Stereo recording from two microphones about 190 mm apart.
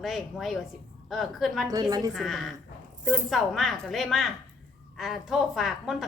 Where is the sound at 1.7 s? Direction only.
20° right (ahead or behind).